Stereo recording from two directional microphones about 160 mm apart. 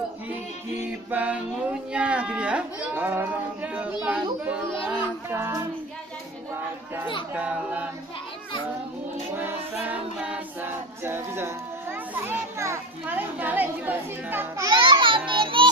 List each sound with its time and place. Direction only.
1.1 s speech: 10° right (ahead or behind)
7.3 s speech: 10° right (ahead or behind)
9.4 s a capella: 10° right (ahead or behind)
14.7 s a sound: 30° right (ahead or behind)